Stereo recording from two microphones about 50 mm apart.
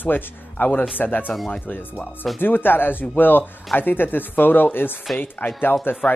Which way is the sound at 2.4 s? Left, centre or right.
Left.